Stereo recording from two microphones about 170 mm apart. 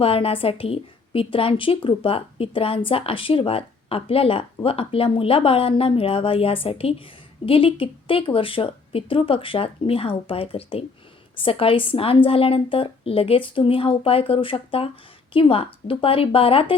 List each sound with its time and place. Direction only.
0.0 s a woman's voice: 35° left (ahead or behind)